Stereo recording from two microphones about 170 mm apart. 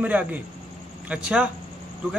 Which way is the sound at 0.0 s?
10° right (ahead or behind).